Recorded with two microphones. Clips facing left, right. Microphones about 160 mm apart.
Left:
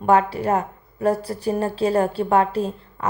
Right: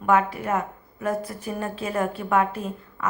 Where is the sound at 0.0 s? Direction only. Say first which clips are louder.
Left 4 dB; 35° left (ahead or behind).